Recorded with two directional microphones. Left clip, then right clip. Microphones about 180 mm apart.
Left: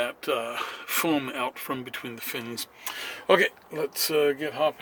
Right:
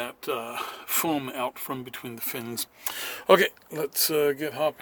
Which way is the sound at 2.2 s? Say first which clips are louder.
Left 1 dB; 35° right (ahead or behind).